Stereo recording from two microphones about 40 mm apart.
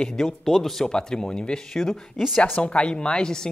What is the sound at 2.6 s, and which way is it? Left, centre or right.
Speech, left.